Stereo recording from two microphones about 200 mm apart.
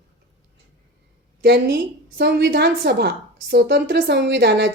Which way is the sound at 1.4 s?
55° right (ahead or behind).